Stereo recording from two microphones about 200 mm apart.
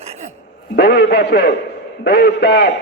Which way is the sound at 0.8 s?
55° left (ahead or behind).